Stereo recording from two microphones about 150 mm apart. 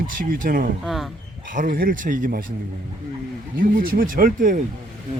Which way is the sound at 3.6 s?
70° right (ahead or behind).